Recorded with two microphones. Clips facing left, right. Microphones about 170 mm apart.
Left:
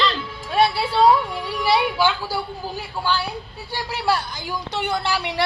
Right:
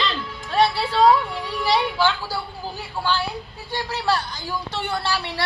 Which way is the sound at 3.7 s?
10° left (ahead or behind).